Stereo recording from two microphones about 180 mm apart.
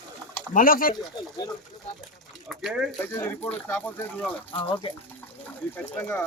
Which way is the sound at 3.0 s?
10° left (ahead or behind).